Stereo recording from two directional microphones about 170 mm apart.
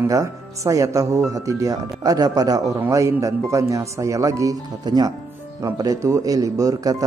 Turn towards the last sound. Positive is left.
turn(degrees=-20)  # may be behind; listen again after turning